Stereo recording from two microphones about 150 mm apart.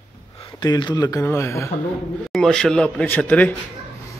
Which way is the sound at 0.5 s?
30° left (ahead or behind).